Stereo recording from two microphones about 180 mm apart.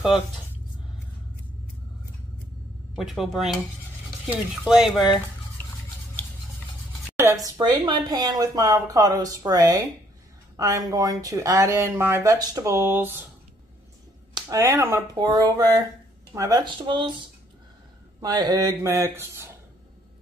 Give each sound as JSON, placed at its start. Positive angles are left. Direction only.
{"t": 3.0, "sound": "speech", "side_deg": 0}
{"t": 7.2, "sound": "speech", "side_deg": -20}
{"t": 14.3, "sound": "speech", "side_deg": -20}